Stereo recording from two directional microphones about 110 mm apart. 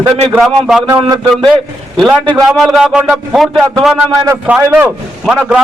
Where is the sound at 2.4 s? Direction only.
Centre (ahead or behind).